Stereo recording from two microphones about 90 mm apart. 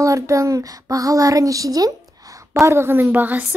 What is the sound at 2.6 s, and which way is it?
Speech, 30° right (ahead or behind).